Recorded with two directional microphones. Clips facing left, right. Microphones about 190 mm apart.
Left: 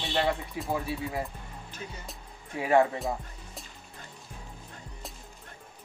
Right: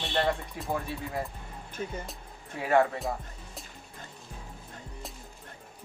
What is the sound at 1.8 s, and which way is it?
Speech, 45° right (ahead or behind).